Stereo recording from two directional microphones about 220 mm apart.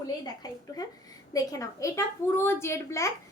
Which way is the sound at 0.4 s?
15° left (ahead or behind).